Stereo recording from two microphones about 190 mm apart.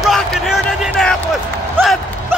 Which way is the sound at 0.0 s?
Centre (ahead or behind).